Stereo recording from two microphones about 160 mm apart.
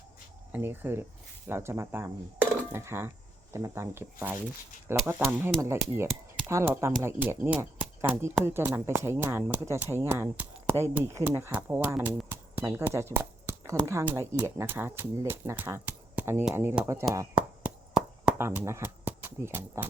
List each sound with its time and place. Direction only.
0.5 s speech: 15° right (ahead or behind)
12.3 s speech: 15° right (ahead or behind)
17.3 s a sound: 5° right (ahead or behind)